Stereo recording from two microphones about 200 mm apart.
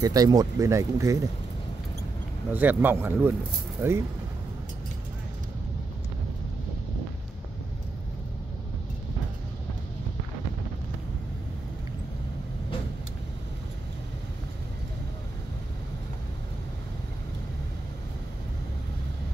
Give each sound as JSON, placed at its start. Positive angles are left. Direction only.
{"t": 0.0, "sound": "speech", "side_deg": -20}
{"t": 2.5, "sound": "speech", "side_deg": -10}